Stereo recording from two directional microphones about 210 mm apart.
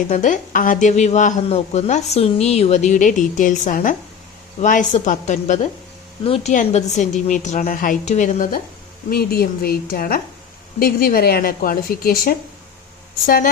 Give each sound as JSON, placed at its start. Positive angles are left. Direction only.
{"t": 0.1, "sound": "a woman's voice", "side_deg": 35}